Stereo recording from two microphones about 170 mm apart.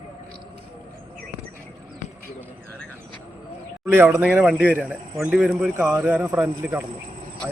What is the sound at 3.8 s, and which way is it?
A man's voice, 15° right (ahead or behind).